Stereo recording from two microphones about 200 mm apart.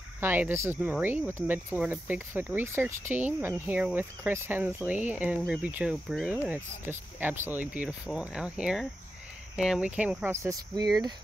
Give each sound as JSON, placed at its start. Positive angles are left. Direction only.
{"t": 0.2, "sound": "speech", "side_deg": -10}